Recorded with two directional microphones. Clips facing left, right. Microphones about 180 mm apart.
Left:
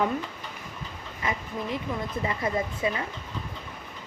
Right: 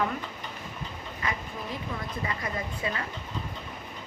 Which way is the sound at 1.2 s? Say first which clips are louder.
Left 4 dB; 20° left (ahead or behind).